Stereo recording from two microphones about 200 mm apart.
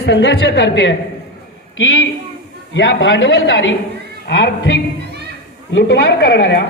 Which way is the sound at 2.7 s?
65° left (ahead or behind).